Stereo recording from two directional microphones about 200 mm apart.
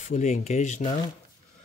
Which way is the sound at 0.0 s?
35° left (ahead or behind).